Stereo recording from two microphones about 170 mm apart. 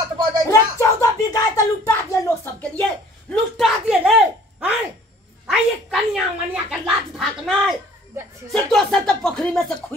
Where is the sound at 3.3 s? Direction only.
Centre (ahead or behind).